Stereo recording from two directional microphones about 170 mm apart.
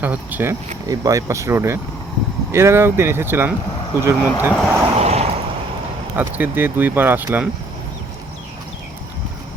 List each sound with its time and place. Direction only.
0.0 s speech: 10° right (ahead or behind)
4.9 s vehicle: 40° right (ahead or behind)
6.1 s speech: 10° right (ahead or behind)